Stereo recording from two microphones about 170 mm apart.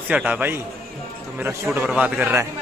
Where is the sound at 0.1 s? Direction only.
10° right (ahead or behind).